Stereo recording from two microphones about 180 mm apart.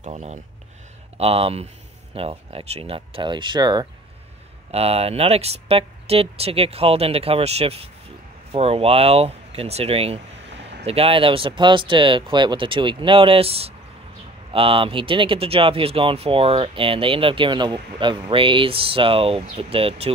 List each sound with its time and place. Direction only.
0.0 s speech: 35° right (ahead or behind)
4.6 s speech: 35° right (ahead or behind)